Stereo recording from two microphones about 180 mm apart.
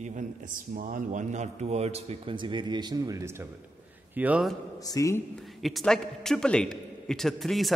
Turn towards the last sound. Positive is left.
turn(degrees=0)  # may be behind; listen again after turning